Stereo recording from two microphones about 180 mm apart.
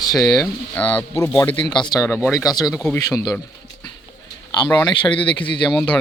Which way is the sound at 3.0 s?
20° left (ahead or behind).